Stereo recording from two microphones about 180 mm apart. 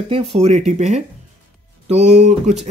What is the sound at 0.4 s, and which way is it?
Speech, 40° right (ahead or behind).